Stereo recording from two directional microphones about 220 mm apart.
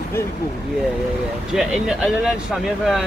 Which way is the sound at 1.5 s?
Centre (ahead or behind).